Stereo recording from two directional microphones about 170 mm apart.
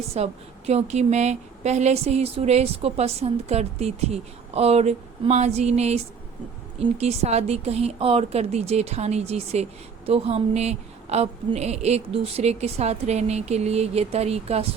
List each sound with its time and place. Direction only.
0.1 s a woman's voice: 35° right (ahead or behind)